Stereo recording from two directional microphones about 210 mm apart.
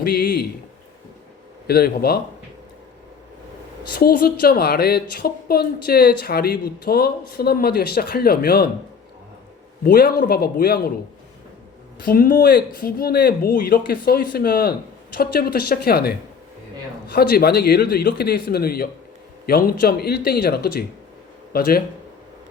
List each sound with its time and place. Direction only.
0.0 s speech: 45° left (ahead or behind)
1.6 s speech: 45° left (ahead or behind)
3.9 s speech: 45° left (ahead or behind)
9.8 s speech: 45° left (ahead or behind)
12.0 s speech: 45° left (ahead or behind)